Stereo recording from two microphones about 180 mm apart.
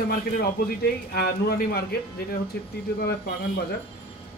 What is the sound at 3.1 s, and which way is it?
Speech, 60° left (ahead or behind).